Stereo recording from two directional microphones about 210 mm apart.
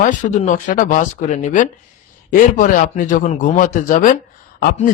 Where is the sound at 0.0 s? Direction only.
35° left (ahead or behind).